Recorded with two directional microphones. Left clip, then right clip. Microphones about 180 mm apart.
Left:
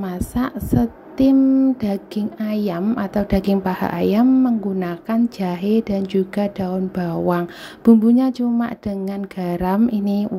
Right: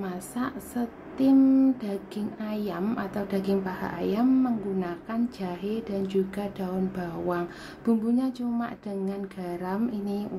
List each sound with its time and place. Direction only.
0.0 s a woman's voice: 30° left (ahead or behind)
1.4 s mantra: 20° left (ahead or behind)
1.8 s a woman's voice: 35° left (ahead or behind)